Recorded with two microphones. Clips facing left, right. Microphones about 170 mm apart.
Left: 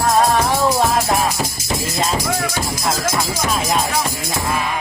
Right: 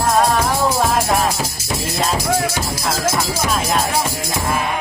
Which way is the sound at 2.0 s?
Centre (ahead or behind).